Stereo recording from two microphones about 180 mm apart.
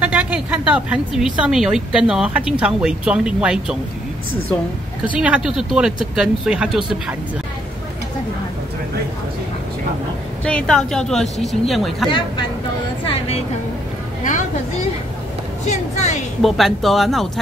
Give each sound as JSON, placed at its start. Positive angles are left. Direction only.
{"t": 0.0, "sound": "a woman's voice", "side_deg": -5}
{"t": 5.1, "sound": "a woman's voice", "side_deg": -5}
{"t": 10.4, "sound": "a woman's voice", "side_deg": 5}
{"t": 13.0, "sound": "a woman's voice", "side_deg": 30}
{"t": 15.6, "sound": "a woman's voice", "side_deg": 40}
{"t": 16.4, "sound": "a woman's voice", "side_deg": 0}